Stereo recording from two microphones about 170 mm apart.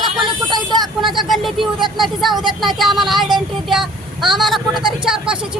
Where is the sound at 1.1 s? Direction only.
Centre (ahead or behind).